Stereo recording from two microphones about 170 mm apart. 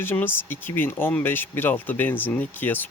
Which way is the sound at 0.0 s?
15° left (ahead or behind).